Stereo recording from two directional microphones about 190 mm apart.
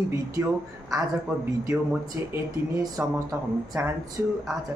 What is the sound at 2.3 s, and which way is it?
Speech, 15° right (ahead or behind).